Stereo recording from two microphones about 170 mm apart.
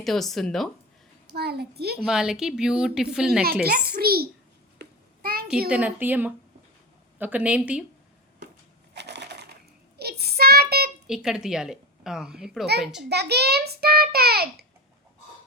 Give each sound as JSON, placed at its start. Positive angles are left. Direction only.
{"t": 0.0, "sound": "a woman's voice", "side_deg": 0}
{"t": 1.3, "sound": "a child's voice", "side_deg": -70}
{"t": 2.0, "sound": "a woman's voice", "side_deg": -5}
{"t": 3.6, "sound": "a child's voice", "side_deg": -65}
{"t": 4.8, "sound": "babbling", "side_deg": -60}
{"t": 5.6, "sound": "a woman's voice", "side_deg": -10}
{"t": 8.9, "sound": "coin", "side_deg": -85}
{"t": 10.0, "sound": "child singing", "side_deg": -70}
{"t": 11.0, "sound": "a child's voice", "side_deg": -5}
{"t": 13.1, "sound": "a child's voice", "side_deg": -75}